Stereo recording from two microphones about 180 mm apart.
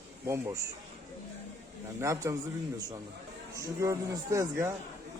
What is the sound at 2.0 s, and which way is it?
Speech, 15° right (ahead or behind).